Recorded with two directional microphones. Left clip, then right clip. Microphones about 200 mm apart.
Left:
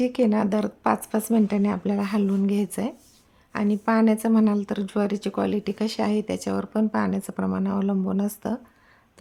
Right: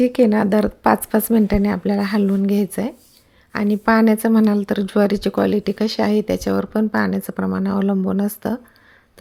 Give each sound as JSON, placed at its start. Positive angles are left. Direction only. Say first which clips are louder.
{"t": 0.0, "sound": "a woman's voice", "louder": "right 7 dB", "side_deg": -20}